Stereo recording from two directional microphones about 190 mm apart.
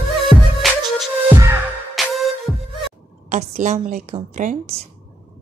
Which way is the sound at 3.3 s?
40° right (ahead or behind).